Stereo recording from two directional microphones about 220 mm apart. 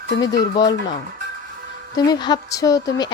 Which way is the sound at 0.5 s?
20° left (ahead or behind).